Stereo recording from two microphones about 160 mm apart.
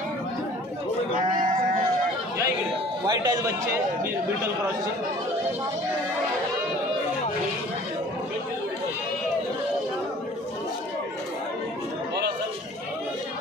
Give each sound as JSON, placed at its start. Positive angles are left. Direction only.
{"t": 3.1, "sound": "a man's voice", "side_deg": -25}